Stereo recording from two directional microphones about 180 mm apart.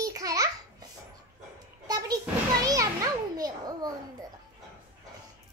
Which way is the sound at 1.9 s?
20° right (ahead or behind).